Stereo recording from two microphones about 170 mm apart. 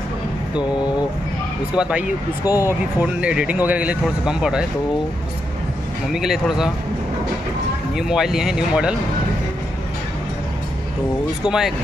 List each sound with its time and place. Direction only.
1.8 s a man's voice: 5° right (ahead or behind)
2.4 s speech: 20° left (ahead or behind)
3.0 s speech: 5° right (ahead or behind)
6.1 s a man's voice: centre (ahead or behind)
7.9 s a man's voice: 5° right (ahead or behind)
11.4 s a man's voice: 5° right (ahead or behind)